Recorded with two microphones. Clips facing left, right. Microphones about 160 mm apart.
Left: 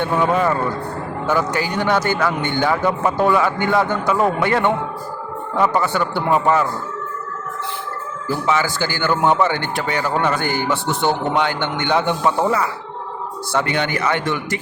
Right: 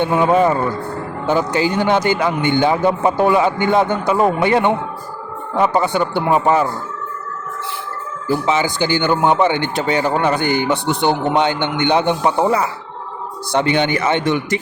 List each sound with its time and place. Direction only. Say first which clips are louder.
0.0 s speech: right 4 dB; 15° right (ahead or behind)
8.4 s speech: right 1 dB; 20° right (ahead or behind)